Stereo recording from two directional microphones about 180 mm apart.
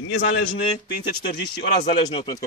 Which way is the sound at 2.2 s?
20° left (ahead or behind).